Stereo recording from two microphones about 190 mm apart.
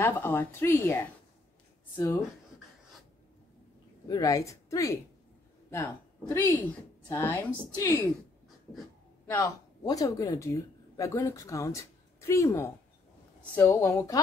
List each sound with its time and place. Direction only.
0.0 s speech: 10° left (ahead or behind)
4.1 s speech: 20° left (ahead or behind)
9.3 s speech: 20° left (ahead or behind)